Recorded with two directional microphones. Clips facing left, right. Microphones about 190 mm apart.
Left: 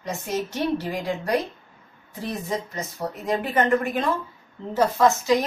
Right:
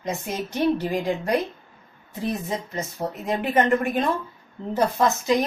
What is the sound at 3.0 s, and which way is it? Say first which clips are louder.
Speech: left 1 dB; 25° right (ahead or behind).